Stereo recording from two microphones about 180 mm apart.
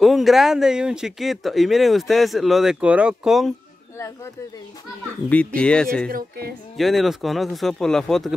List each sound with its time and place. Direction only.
0.0 s speech: centre (ahead or behind)
5.3 s speech: 5° left (ahead or behind)
6.0 s speech: 60° right (ahead or behind)
6.8 s speech: centre (ahead or behind)